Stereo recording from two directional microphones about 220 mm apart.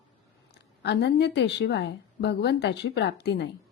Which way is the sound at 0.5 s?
50° left (ahead or behind).